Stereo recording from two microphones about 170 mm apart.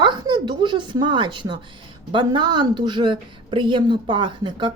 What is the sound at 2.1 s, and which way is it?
A woman's voice, 25° right (ahead or behind).